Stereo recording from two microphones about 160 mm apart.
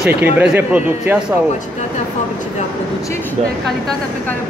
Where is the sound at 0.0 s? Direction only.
10° right (ahead or behind).